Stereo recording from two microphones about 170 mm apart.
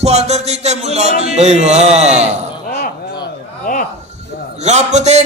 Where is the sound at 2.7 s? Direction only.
65° left (ahead or behind).